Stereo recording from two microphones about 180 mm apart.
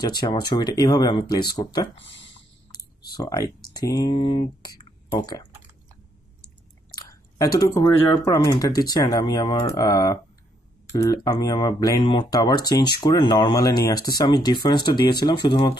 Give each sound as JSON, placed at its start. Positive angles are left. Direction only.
{"t": 0.0, "sound": "speech", "side_deg": 25}
{"t": 2.0, "sound": "speech", "side_deg": 90}
{"t": 2.8, "sound": "a sound", "side_deg": 20}
{"t": 3.7, "sound": "speech", "side_deg": 20}
{"t": 7.0, "sound": "speech", "side_deg": 20}